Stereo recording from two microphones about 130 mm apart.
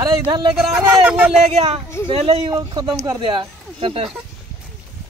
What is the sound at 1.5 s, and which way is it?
Speech, 50° right (ahead or behind).